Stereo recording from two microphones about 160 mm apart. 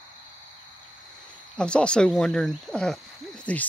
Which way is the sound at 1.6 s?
5° left (ahead or behind).